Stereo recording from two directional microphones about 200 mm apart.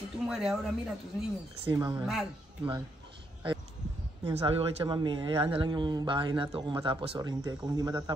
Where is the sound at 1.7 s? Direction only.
20° right (ahead or behind).